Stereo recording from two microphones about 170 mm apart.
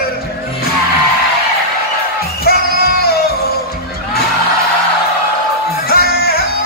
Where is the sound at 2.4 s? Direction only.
65° left (ahead or behind).